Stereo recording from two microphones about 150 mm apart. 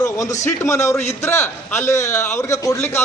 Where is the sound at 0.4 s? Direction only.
20° left (ahead or behind).